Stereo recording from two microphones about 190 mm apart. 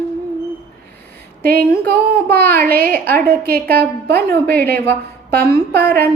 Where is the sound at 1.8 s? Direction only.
55° right (ahead or behind).